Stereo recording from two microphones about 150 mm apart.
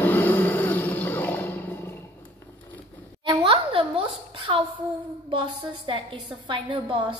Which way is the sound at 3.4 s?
35° right (ahead or behind).